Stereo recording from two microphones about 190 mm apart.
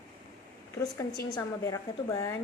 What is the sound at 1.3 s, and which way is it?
A woman's voice, 15° left (ahead or behind).